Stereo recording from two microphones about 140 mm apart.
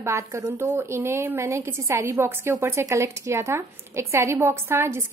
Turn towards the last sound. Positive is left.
turn(degrees=-20)  # may be behind; listen again after turning